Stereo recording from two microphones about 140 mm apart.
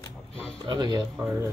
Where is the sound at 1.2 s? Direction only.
15° right (ahead or behind).